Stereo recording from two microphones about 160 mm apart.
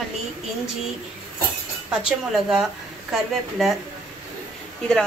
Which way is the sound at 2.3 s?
5° right (ahead or behind).